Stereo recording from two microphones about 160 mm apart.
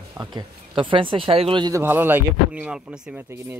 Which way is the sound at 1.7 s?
15° right (ahead or behind).